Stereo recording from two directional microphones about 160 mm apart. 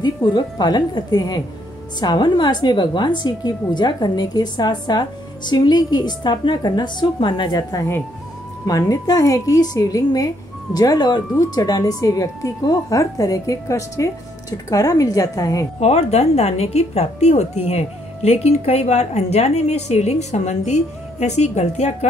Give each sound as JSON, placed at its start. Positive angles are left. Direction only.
{"t": 0.0, "sound": "a woman's voice", "side_deg": 30}
{"t": 15.8, "sound": "a woman's voice", "side_deg": 40}